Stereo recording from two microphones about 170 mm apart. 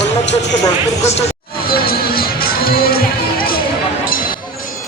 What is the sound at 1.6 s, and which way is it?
Music, 60° left (ahead or behind).